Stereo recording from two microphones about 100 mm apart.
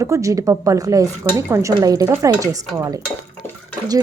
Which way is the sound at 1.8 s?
35° right (ahead or behind).